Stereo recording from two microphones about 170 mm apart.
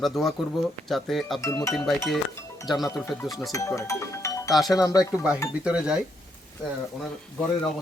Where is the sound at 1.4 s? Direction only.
20° left (ahead or behind).